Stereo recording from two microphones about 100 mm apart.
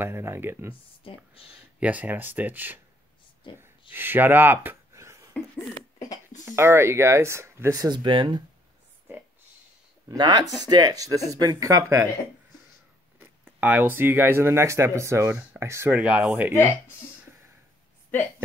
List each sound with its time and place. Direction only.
0.0 s speech: 25° right (ahead or behind)
1.0 s speech: 65° left (ahead or behind)
1.5 s speech: 15° right (ahead or behind)
3.9 s speech: 20° right (ahead or behind)
4.9 s a sound: 30° right (ahead or behind)
6.4 s speech: 25° right (ahead or behind)
7.7 s speech: 45° right (ahead or behind)
10.0 s speech: 50° right (ahead or behind); by 12.1 s 30° right (ahead or behind)
13.2 s speech: 20° right (ahead or behind)